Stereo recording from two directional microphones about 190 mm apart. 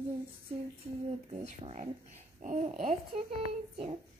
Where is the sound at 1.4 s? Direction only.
35° right (ahead or behind).